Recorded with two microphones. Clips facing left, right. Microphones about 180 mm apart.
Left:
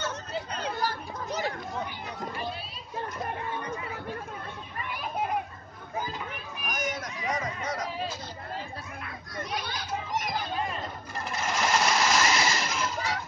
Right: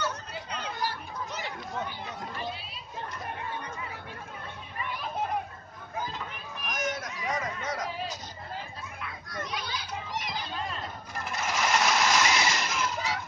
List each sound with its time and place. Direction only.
0.5 s children playing: 40° left (ahead or behind)
6.7 s a sound: centre (ahead or behind)
9.5 s children playing: 50° left (ahead or behind)
11.2 s sewing machine: centre (ahead or behind)